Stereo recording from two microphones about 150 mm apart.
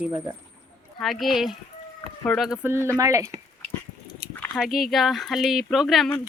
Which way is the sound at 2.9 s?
20° right (ahead or behind).